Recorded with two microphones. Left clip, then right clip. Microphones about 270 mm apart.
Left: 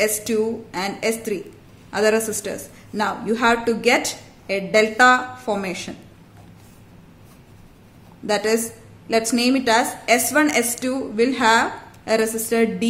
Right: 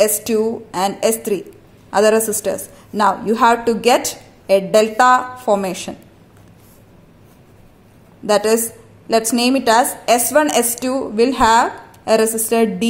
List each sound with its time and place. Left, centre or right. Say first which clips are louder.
0.0 s a woman's voice: right 5 dB; centre
8.3 s a woman's voice: right 5 dB; centre